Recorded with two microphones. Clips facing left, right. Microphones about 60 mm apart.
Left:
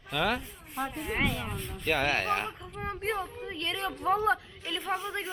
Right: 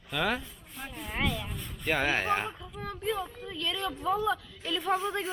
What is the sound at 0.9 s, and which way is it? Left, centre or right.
Rub, centre.